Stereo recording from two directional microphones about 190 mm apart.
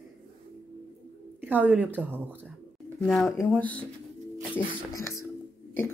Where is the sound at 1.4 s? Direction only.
10° right (ahead or behind).